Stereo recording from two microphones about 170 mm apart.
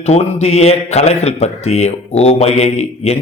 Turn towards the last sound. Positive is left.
turn(degrees=40)  # may be behind; listen again after turning